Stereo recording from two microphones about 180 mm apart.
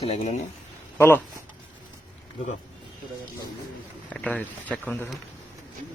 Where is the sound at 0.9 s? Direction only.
15° left (ahead or behind).